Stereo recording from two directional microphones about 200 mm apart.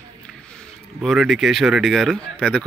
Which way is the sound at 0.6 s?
Centre (ahead or behind).